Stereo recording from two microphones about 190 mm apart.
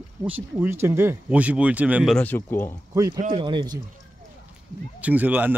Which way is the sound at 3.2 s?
30° right (ahead or behind).